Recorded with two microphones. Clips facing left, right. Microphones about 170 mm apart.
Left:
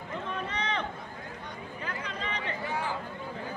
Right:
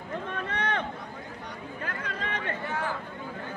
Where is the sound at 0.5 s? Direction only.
55° right (ahead or behind).